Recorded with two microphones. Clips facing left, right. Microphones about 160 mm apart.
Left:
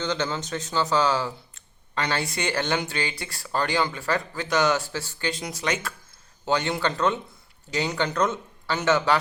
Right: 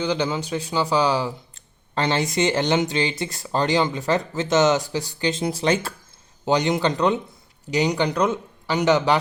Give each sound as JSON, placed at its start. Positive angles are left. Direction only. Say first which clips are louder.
{"t": 0.0, "sound": "a man's voice", "louder": "right 4 dB", "side_deg": -10}
{"t": 6.4, "sound": "a man's voice", "louder": "right 5 dB", "side_deg": -15}